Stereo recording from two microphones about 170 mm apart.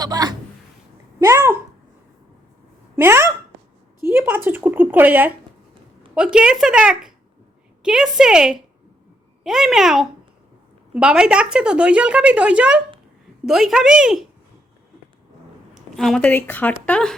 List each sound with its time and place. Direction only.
0.0 s speech: 20° right (ahead or behind)
2.9 s speech: 15° right (ahead or behind)
15.7 s speech: centre (ahead or behind)